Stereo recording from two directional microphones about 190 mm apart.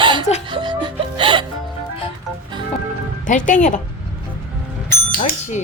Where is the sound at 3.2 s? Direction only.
40° left (ahead or behind).